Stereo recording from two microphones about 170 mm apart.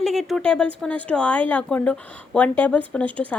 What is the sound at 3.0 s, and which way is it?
Speech, 30° right (ahead or behind).